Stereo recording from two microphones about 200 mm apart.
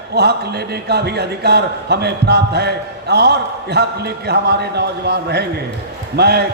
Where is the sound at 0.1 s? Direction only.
55° right (ahead or behind).